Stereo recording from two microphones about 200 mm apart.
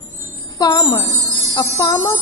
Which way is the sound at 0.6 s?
20° left (ahead or behind).